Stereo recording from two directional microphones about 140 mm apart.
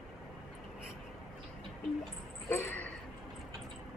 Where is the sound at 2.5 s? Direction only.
15° left (ahead or behind).